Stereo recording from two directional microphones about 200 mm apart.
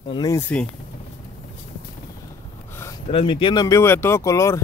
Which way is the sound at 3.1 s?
25° left (ahead or behind).